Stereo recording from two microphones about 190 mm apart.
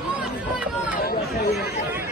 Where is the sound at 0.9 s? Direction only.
55° left (ahead or behind).